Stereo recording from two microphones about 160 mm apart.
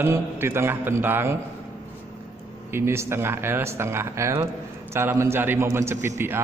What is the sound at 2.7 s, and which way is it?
A man's voice, 15° right (ahead or behind).